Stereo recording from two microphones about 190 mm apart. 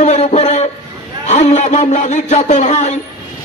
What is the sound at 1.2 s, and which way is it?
A man's voice, 40° left (ahead or behind).